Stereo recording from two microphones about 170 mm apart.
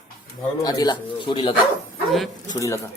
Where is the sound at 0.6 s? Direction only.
25° left (ahead or behind).